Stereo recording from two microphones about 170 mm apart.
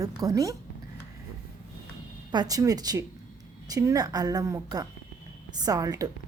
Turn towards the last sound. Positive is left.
turn(degrees=-20)  # may be behind; listen again after turning